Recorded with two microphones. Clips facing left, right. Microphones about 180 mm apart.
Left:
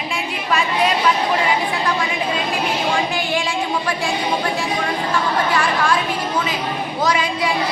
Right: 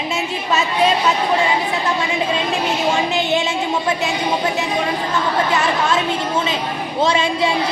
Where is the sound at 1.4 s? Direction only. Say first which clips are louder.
Right 1 dB; 25° right (ahead or behind).